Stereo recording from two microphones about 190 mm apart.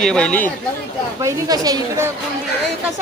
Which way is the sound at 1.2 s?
15° right (ahead or behind).